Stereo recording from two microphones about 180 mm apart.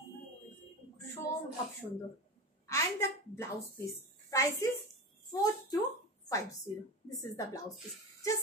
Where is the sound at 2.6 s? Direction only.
15° left (ahead or behind).